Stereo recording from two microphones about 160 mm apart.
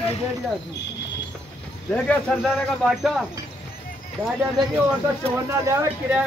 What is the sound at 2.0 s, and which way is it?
Speech, 10° left (ahead or behind).